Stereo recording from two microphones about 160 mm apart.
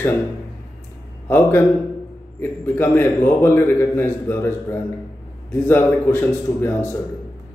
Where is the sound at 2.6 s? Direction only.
15° left (ahead or behind).